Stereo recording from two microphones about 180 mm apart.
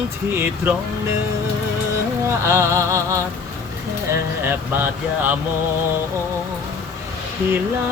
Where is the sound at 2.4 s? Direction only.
15° right (ahead or behind).